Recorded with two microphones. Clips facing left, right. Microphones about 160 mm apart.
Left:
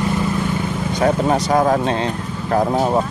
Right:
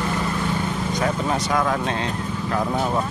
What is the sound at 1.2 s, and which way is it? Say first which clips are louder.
Speech: left 6 dB; 40° left (ahead or behind).